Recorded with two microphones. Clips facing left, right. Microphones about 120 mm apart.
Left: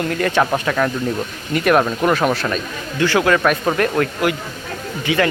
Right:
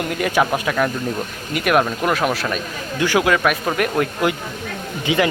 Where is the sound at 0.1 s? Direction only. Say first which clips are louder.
Even; 10° right (ahead or behind).